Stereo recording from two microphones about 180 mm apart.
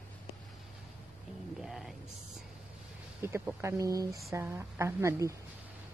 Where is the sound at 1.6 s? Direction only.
Centre (ahead or behind).